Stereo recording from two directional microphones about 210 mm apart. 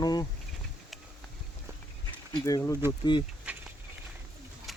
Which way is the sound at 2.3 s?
15° left (ahead or behind).